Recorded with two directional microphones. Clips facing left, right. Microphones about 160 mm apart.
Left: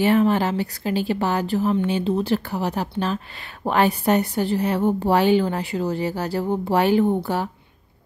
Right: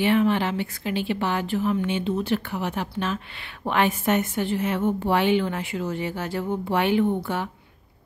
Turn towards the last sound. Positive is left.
turn(degrees=35)  # may be behind; listen again after turning